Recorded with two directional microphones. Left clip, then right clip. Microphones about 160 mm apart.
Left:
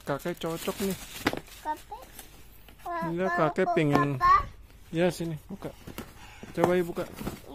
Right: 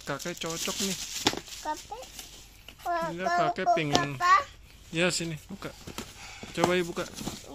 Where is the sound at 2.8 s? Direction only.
55° right (ahead or behind).